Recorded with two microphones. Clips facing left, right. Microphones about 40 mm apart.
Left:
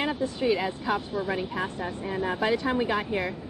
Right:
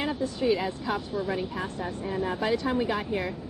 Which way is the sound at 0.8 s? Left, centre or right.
Centre.